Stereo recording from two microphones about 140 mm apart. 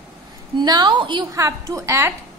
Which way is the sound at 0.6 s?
30° right (ahead or behind).